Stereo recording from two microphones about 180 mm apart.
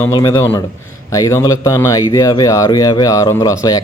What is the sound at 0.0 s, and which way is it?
A man's voice, 20° left (ahead or behind).